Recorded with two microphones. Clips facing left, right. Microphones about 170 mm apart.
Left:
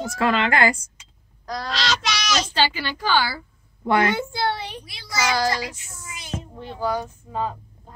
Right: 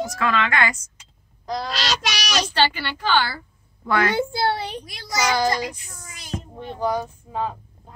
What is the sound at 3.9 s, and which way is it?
Speech, 25° left (ahead or behind).